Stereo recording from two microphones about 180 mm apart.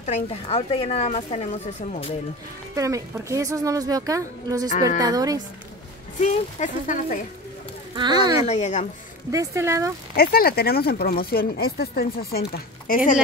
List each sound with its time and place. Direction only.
0.0 s speech: 35° left (ahead or behind)
2.7 s a woman's voice: 15° right (ahead or behind)
6.1 s speech: 40° left (ahead or behind)
7.9 s speech: 25° right (ahead or behind)
8.5 s speech: 40° left (ahead or behind)
9.3 s a woman's voice: 15° right (ahead or behind)
10.1 s speech: 60° left (ahead or behind)